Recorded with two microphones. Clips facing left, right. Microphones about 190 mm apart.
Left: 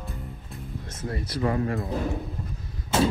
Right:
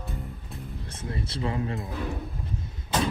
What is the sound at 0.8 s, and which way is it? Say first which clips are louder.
Speech: left 2 dB; 30° right (ahead or behind).